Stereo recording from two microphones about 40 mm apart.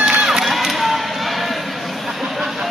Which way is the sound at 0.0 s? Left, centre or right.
Centre.